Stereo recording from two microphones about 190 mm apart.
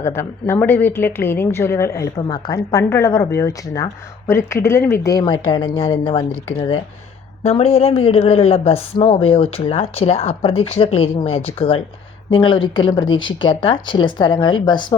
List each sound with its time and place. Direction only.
0.0 s a woman's voice: 15° left (ahead or behind)